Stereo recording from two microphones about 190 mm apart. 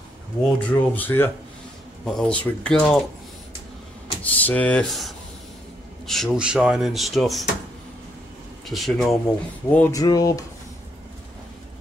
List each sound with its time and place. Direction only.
0.4 s speech: 5° left (ahead or behind)
4.2 s speech: 10° left (ahead or behind)
8.6 s speech: centre (ahead or behind); by 10.4 s 20° left (ahead or behind)